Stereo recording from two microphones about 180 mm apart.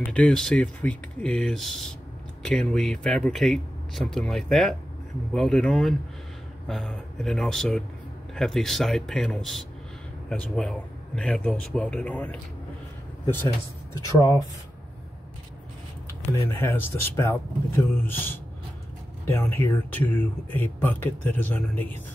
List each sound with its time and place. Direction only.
0.1 s speech: 5° left (ahead or behind)
13.9 s speech: 15° left (ahead or behind)
16.3 s speech: 10° left (ahead or behind)